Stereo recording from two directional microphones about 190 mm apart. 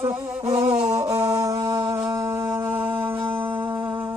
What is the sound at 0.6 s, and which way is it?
Music, 35° right (ahead or behind).